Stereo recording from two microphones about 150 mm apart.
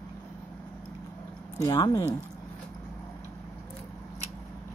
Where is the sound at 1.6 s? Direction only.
25° left (ahead or behind).